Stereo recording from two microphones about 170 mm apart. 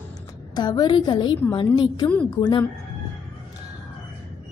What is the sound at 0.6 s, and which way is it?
A woman's voice, 25° left (ahead or behind).